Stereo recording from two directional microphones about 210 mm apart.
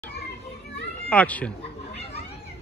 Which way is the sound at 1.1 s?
5° left (ahead or behind).